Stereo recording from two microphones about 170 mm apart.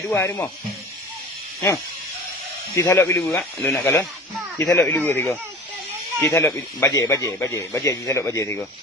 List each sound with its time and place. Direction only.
0.1 s speech: 10° left (ahead or behind)
2.7 s speech: 15° left (ahead or behind)